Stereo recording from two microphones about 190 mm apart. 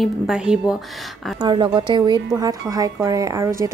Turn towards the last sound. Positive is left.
turn(degrees=-15)  # may be behind; listen again after turning